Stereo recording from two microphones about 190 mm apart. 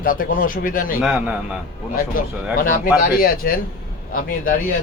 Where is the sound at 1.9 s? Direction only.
45° left (ahead or behind).